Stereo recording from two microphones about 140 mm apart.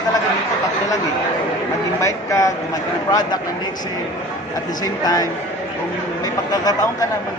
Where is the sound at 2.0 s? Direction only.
20° left (ahead or behind).